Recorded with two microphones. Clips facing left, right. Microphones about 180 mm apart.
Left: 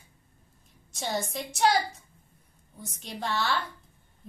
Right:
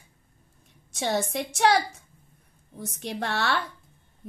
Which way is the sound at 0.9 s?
65° right (ahead or behind).